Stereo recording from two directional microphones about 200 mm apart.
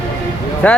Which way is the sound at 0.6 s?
5° left (ahead or behind).